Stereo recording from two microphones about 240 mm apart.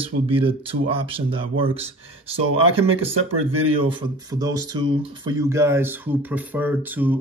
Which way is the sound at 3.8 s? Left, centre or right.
Centre.